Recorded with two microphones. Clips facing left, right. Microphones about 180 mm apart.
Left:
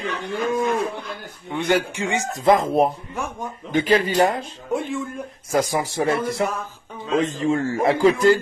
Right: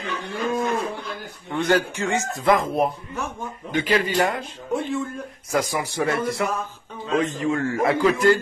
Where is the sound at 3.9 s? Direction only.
25° left (ahead or behind).